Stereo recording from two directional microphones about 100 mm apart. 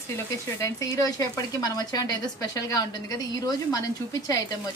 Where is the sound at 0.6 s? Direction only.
35° left (ahead or behind).